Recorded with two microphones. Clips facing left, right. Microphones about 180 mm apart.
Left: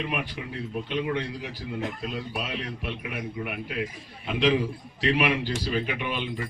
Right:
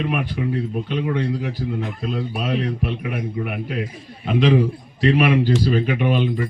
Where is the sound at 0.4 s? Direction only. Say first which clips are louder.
Right 9 dB; 50° right (ahead or behind).